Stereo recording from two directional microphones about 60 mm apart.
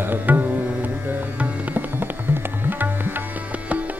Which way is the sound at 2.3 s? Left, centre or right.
Right.